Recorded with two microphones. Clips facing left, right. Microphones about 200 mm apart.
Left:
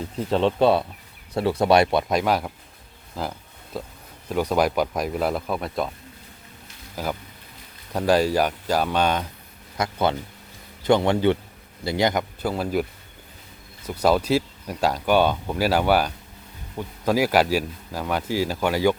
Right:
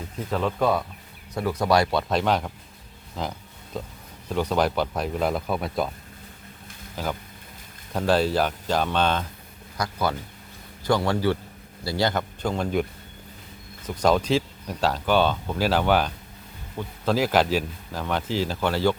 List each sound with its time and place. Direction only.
0.3 s speech: 30° left (ahead or behind); by 5.9 s centre (ahead or behind)
6.9 s speech: 10° left (ahead or behind)
9.7 s speech: 25° left (ahead or behind); by 12.8 s 5° left (ahead or behind)
13.8 s speech: 10° left (ahead or behind)